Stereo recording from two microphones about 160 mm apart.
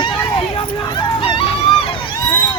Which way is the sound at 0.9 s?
35° left (ahead or behind).